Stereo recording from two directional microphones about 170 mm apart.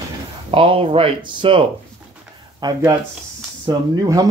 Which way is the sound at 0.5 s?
30° right (ahead or behind).